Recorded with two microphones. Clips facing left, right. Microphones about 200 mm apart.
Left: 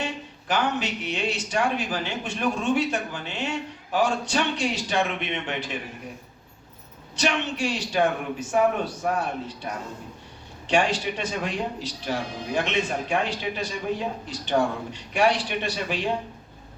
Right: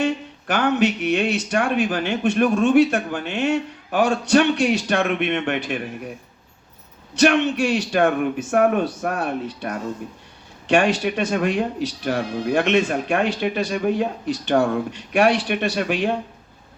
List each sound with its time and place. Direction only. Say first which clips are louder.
0.0 s speech: right 9 dB; 65° right (ahead or behind)
3.9 s speech: right 7 dB; 70° right (ahead or behind)
7.2 s speech: right 9 dB; 70° right (ahead or behind)
8.4 s speech: right 3 dB; 60° right (ahead or behind)
10.8 s speech: right 5 dB; 50° right (ahead or behind)
11.2 s speech: right 8 dB; 70° right (ahead or behind)